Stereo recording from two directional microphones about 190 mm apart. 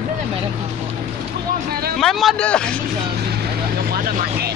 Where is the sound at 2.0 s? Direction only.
Centre (ahead or behind).